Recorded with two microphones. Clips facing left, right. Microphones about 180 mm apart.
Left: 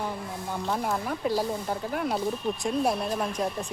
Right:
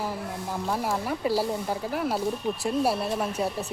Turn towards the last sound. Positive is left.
turn(degrees=-5)  # may be behind; listen again after turning